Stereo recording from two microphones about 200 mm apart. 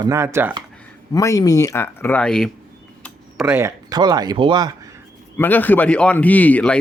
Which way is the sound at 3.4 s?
15° right (ahead or behind).